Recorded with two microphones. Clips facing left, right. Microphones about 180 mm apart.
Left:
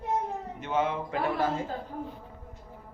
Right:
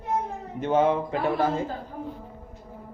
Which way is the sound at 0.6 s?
35° right (ahead or behind).